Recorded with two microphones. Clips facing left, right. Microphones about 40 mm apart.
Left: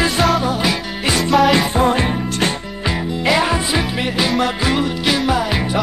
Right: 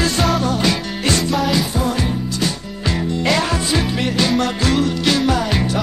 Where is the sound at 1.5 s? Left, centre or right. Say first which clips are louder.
Left 4 dB; left.